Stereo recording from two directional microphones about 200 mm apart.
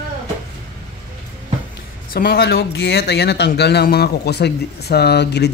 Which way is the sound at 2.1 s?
50° left (ahead or behind).